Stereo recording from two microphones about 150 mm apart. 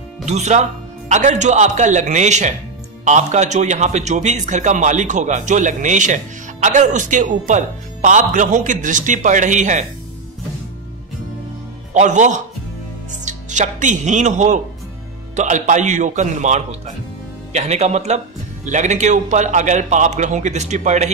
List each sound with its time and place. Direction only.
0.2 s a man's voice: 50° right (ahead or behind)
11.9 s a man's voice: 55° right (ahead or behind)